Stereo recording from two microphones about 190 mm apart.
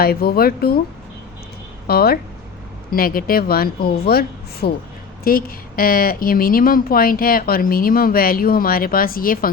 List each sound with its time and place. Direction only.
0.0 s a woman's voice: 55° left (ahead or behind)
1.9 s a woman's voice: 55° left (ahead or behind)